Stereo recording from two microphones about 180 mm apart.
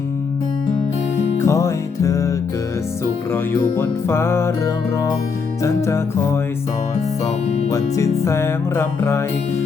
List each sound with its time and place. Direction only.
1.4 s music: 15° left (ahead or behind)
7.4 s music: 35° left (ahead or behind)
7.7 s music: 15° left (ahead or behind)